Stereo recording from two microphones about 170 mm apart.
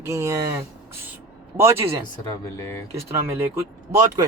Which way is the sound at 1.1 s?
15° right (ahead or behind).